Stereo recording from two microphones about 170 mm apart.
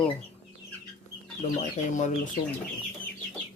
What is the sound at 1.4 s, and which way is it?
Speech, 45° left (ahead or behind).